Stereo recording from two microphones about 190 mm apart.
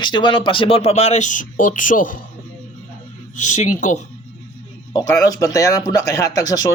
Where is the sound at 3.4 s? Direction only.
40° left (ahead or behind).